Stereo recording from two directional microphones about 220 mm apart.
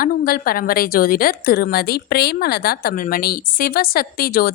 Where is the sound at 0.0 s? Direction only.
40° left (ahead or behind).